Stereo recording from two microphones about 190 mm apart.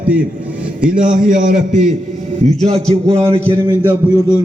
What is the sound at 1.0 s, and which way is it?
Speech, 45° right (ahead or behind).